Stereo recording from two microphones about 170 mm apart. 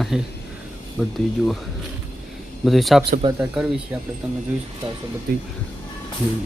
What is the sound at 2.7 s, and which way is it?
Speech, centre (ahead or behind).